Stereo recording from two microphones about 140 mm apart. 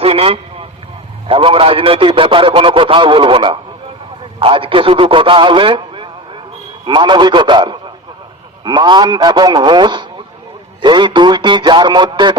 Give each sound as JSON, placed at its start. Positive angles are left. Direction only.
{"t": 0.0, "sound": "vehicle", "side_deg": -45}
{"t": 1.3, "sound": "a man's voice", "side_deg": -40}